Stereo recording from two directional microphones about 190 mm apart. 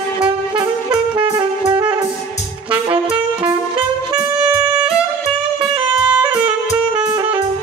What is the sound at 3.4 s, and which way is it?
Music, 25° right (ahead or behind).